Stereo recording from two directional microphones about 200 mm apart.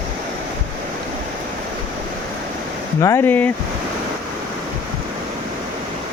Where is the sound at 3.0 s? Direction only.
15° left (ahead or behind).